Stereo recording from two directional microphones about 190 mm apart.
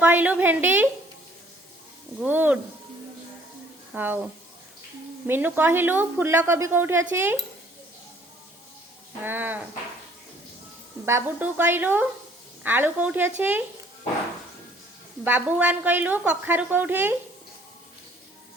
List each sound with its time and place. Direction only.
0.0 s a woman's voice: 10° right (ahead or behind)
2.2 s a woman's voice: 10° right (ahead or behind)
3.9 s a woman's voice: 10° right (ahead or behind)
9.2 s a woman's voice: 10° right (ahead or behind)
11.0 s a woman's voice: 10° right (ahead or behind)
15.2 s a woman's voice: 10° right (ahead or behind)